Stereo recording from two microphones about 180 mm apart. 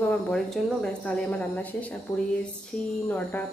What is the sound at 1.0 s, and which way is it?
Speech, 5° left (ahead or behind).